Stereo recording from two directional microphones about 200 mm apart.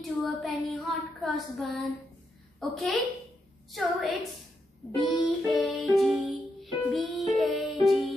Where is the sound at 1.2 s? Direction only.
Centre (ahead or behind).